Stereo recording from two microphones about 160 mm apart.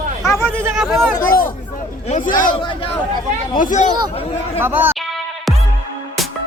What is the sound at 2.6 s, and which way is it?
Speech, 30° left (ahead or behind).